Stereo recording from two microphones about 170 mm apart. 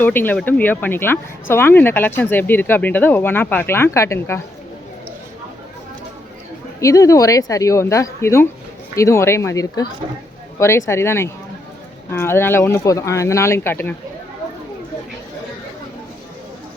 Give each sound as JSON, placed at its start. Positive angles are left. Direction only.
{"t": 0.0, "sound": "speech", "side_deg": 10}
{"t": 6.7, "sound": "speech", "side_deg": 20}